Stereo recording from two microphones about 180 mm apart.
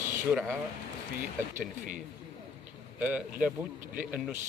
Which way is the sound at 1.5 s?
45° right (ahead or behind).